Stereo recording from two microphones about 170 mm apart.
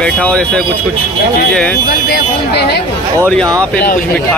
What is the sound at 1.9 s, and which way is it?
Speech, 75° left (ahead or behind).